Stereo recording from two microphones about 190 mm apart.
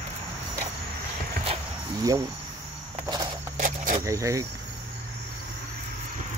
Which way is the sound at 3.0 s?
25° right (ahead or behind).